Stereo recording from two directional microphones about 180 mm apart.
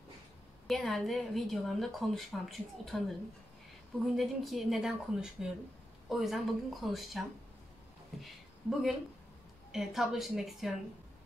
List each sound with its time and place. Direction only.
0.7 s speech: centre (ahead or behind)
4.0 s speech: centre (ahead or behind)